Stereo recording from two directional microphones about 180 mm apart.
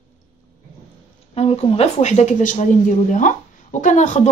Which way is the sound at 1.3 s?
35° left (ahead or behind).